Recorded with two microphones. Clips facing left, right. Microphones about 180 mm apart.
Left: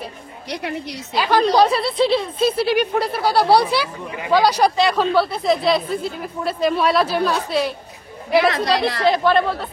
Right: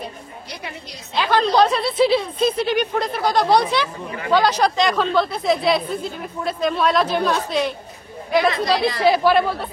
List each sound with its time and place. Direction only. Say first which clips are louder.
0.5 s a woman's voice: left 10 dB; 70° left (ahead or behind)
1.1 s a woman's voice: left 1 dB; 10° left (ahead or behind)